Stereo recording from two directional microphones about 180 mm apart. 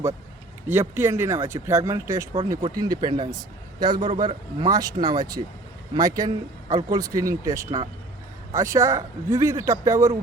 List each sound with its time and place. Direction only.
0.7 s speech: 15° right (ahead or behind)